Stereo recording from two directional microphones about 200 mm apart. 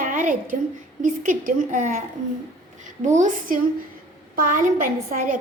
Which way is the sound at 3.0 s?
40° right (ahead or behind).